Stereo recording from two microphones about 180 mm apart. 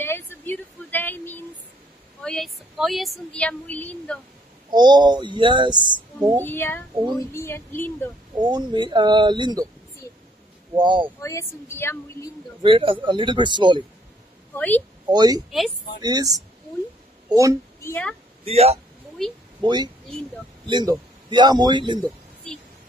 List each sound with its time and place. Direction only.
0.0 s a sound: 10° left (ahead or behind)
2.2 s speech: centre (ahead or behind)
4.6 s speech: 25° right (ahead or behind)
6.4 s a woman's voice: 10° left (ahead or behind)
8.4 s speech: 25° right (ahead or behind)
10.7 s speech: 25° right (ahead or behind)
11.1 s a woman's voice: 15° left (ahead or behind)
12.6 s speech: 30° right (ahead or behind)
14.5 s a woman's voice: 10° left (ahead or behind)
15.0 s speech: 20° right (ahead or behind)
17.8 s a woman's voice: 10° left (ahead or behind)
18.4 s speech: 35° right (ahead or behind)
19.6 s speech: 25° right (ahead or behind)
22.0 s a sound: 5° left (ahead or behind)